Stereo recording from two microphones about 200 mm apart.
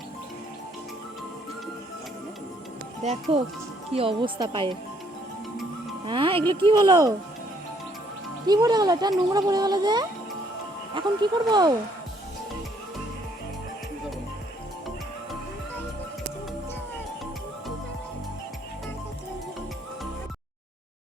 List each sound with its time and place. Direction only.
3.0 s speech: 35° right (ahead or behind)
6.1 s speech: 25° right (ahead or behind)
8.4 s speech: 20° right (ahead or behind)